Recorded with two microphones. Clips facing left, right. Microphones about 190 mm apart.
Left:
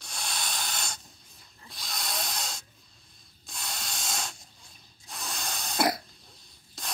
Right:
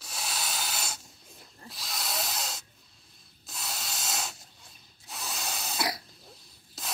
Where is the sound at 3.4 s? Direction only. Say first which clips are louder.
Even; 5° right (ahead or behind).